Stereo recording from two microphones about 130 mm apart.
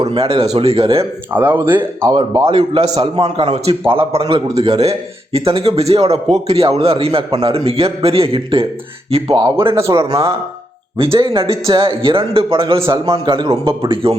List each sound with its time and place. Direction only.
0.0 s speech: 50° right (ahead or behind)
1.3 s speech: 15° right (ahead or behind)
2.0 s a man's voice: 35° right (ahead or behind)
9.7 s a man's voice: 20° right (ahead or behind)
10.9 s a man's voice: 45° right (ahead or behind)